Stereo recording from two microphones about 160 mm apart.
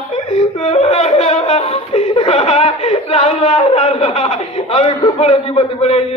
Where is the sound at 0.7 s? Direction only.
40° left (ahead or behind).